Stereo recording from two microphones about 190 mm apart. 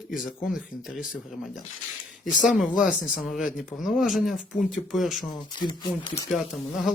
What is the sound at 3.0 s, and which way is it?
Speech, centre (ahead or behind).